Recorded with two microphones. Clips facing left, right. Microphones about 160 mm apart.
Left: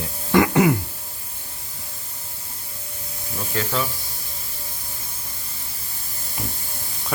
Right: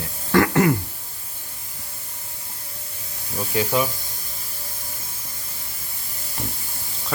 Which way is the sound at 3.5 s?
15° right (ahead or behind).